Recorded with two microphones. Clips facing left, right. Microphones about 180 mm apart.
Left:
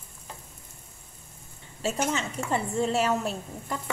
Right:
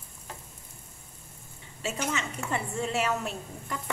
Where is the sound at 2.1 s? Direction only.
35° left (ahead or behind).